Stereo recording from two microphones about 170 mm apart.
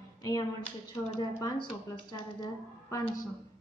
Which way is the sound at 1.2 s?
20° left (ahead or behind).